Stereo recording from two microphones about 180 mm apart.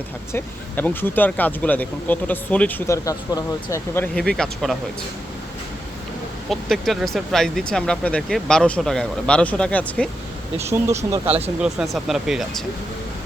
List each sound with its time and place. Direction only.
0.3 s speech: 10° left (ahead or behind)
6.5 s speech: centre (ahead or behind)
10.7 s speech: 15° right (ahead or behind)
11.4 s speech: 5° right (ahead or behind)